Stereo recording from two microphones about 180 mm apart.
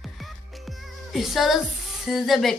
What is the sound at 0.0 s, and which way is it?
Music, centre (ahead or behind).